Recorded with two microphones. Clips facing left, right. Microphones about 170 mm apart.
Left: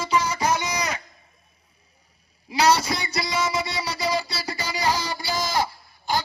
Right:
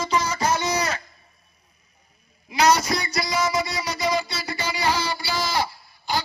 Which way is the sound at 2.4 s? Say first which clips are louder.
Right 1 dB; 30° left (ahead or behind).